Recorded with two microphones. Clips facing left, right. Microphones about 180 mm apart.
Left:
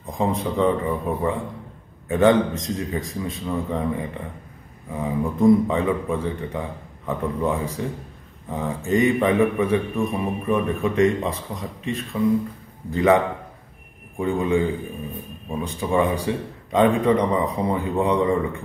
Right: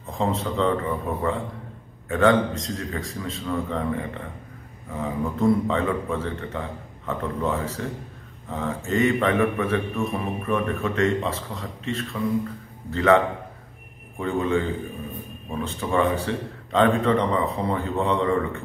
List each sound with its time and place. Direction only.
0.2 s a man's voice: 15° left (ahead or behind)